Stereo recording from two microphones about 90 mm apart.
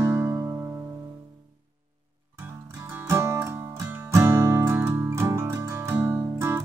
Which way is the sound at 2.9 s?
25° right (ahead or behind).